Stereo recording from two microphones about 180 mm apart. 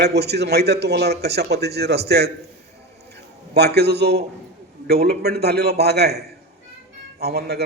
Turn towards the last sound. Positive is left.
turn(degrees=-65)  # may be behind; listen again after turning